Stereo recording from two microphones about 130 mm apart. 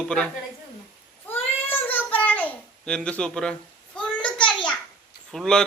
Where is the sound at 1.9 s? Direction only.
15° left (ahead or behind).